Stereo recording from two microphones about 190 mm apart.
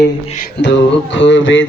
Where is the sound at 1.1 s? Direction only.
75° left (ahead or behind).